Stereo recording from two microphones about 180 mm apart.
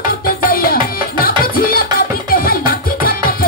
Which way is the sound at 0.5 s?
55° left (ahead or behind).